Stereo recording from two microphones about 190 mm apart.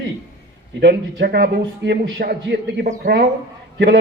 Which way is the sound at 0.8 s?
60° right (ahead or behind).